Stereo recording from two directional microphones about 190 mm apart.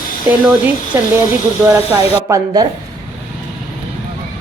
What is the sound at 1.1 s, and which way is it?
Speech, 15° right (ahead or behind).